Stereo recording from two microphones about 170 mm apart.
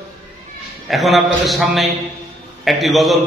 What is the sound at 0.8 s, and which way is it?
A man's voice, centre (ahead or behind).